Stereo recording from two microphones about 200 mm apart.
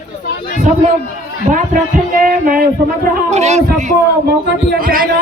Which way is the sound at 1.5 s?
40° right (ahead or behind).